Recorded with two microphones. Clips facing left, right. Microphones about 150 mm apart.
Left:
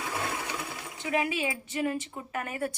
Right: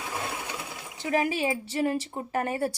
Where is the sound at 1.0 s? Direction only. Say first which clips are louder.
Right 3 dB; 35° right (ahead or behind).